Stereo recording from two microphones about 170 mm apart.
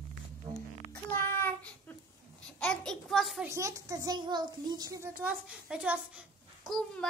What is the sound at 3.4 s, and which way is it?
A child's voice, 15° right (ahead or behind).